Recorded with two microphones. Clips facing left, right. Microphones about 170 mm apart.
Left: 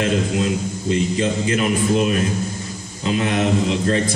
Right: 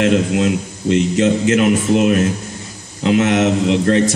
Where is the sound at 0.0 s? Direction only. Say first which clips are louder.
Right 5 dB; 70° right (ahead or behind).